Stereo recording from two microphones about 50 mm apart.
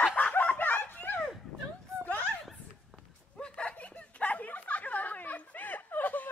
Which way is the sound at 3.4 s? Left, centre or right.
Left.